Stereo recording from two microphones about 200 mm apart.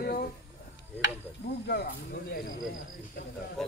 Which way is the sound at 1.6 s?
55° left (ahead or behind).